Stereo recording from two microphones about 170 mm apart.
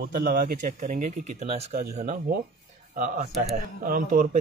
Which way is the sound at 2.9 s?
50° right (ahead or behind).